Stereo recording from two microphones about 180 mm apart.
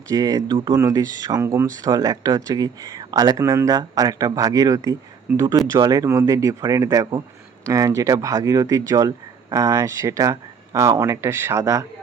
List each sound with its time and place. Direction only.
0.1 s speech: 20° right (ahead or behind)